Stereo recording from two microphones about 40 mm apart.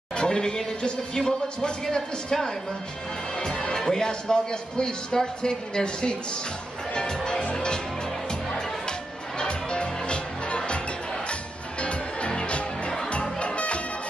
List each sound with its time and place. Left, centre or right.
0.1 s speech: left
6.9 s music: centre
11.8 s music: left